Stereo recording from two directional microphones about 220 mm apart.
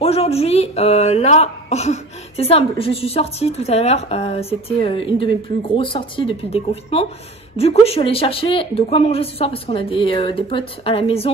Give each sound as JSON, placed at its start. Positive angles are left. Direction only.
{"t": 0.0, "sound": "speech", "side_deg": 25}